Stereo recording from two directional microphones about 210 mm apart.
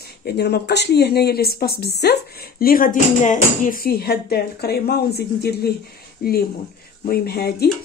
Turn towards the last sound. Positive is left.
turn(degrees=45)  # may be behind; listen again after turning